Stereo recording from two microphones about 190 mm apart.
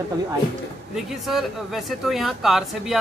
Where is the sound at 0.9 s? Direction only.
Centre (ahead or behind).